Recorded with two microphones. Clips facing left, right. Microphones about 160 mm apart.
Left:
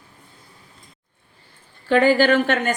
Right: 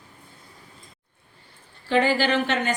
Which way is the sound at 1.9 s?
50° left (ahead or behind).